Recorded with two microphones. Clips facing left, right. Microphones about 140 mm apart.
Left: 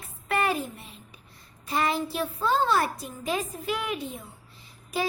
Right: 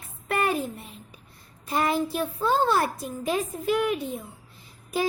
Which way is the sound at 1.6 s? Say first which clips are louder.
Right 2 dB; 50° right (ahead or behind).